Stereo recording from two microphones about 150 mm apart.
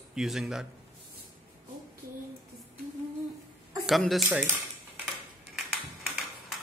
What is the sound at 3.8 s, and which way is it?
Speech, centre (ahead or behind).